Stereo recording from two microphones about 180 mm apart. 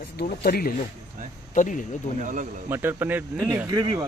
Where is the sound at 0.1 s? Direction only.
60° left (ahead or behind); by 2.0 s 45° left (ahead or behind).